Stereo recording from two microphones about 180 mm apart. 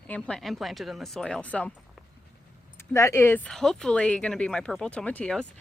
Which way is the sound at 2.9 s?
15° left (ahead or behind).